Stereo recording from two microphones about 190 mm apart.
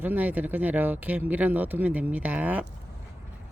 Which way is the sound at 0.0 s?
10° right (ahead or behind).